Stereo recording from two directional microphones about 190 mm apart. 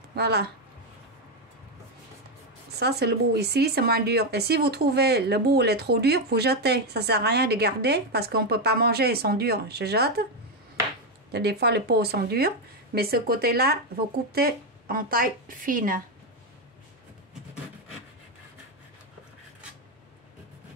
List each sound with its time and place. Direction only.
0.1 s speech: 60° right (ahead or behind)
2.8 s speech: 60° right (ahead or behind)
11.3 s speech: 60° right (ahead or behind)